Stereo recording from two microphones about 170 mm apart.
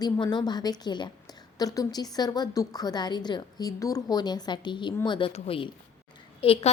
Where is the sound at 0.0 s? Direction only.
25° left (ahead or behind).